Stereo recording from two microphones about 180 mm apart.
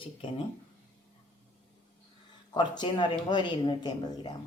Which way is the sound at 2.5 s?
25° left (ahead or behind).